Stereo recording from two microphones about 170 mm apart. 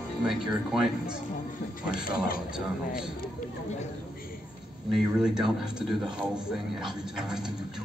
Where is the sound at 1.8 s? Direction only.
55° left (ahead or behind).